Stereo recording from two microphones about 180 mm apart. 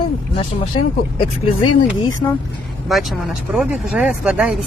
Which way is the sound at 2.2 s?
15° left (ahead or behind).